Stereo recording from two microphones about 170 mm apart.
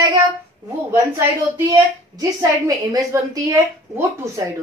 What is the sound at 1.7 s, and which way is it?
A woman's voice, 20° right (ahead or behind).